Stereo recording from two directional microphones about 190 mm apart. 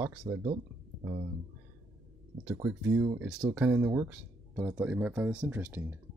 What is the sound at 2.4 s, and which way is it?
Speech, 10° right (ahead or behind).